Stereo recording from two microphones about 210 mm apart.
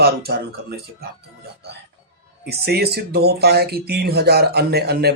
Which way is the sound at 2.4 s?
50° right (ahead or behind).